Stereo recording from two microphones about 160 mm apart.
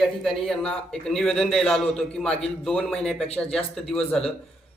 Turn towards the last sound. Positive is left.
turn(degrees=5)  # may be behind; listen again after turning